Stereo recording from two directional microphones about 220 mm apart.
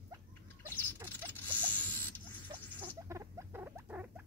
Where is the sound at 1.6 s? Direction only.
10° left (ahead or behind).